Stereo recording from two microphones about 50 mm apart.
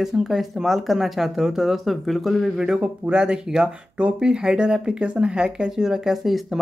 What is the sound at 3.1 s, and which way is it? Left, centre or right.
Speech, right.